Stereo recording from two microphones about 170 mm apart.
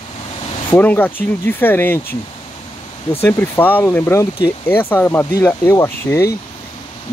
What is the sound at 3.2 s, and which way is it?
Speech, 15° left (ahead or behind).